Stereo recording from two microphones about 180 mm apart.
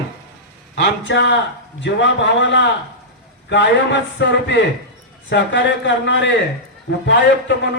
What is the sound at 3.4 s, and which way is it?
A man's voice, 75° left (ahead or behind).